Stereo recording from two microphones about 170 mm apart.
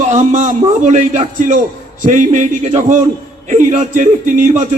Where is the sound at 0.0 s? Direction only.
45° right (ahead or behind).